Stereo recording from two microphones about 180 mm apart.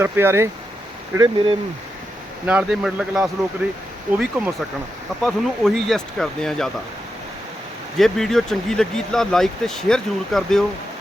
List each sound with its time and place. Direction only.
0.0 s speech: 15° right (ahead or behind)
2.5 s speech: 5° right (ahead or behind)
4.4 s speech: 10° right (ahead or behind)
5.2 s speech: centre (ahead or behind)
7.9 s speech: centre (ahead or behind)